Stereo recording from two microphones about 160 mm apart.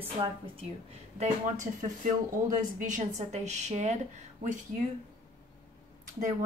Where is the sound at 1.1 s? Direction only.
45° right (ahead or behind).